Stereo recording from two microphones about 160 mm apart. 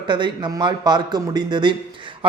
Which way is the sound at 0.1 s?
30° right (ahead or behind).